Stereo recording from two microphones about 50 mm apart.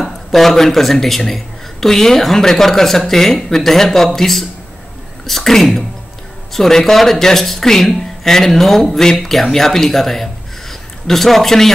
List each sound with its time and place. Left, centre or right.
0.0 s speech: centre